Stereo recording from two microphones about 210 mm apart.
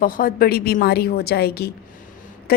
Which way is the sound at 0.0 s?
45° left (ahead or behind).